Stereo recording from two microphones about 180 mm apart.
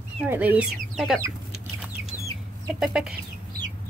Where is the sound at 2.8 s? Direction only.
5° right (ahead or behind).